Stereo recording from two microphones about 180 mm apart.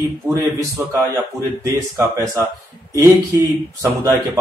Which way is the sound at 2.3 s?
15° right (ahead or behind).